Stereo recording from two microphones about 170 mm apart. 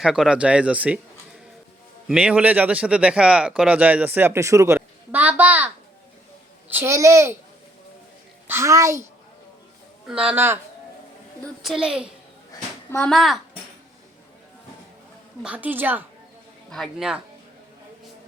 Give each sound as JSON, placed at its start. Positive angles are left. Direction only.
{"t": 0.0, "sound": "speech", "side_deg": -5}
{"t": 2.0, "sound": "speech", "side_deg": -5}
{"t": 8.4, "sound": "speech", "side_deg": -15}
{"t": 10.1, "sound": "speech", "side_deg": -5}
{"t": 11.6, "sound": "speech", "side_deg": 0}
{"t": 12.9, "sound": "speech", "side_deg": 5}
{"t": 15.4, "sound": "speech", "side_deg": -10}
{"t": 16.6, "sound": "speech", "side_deg": 5}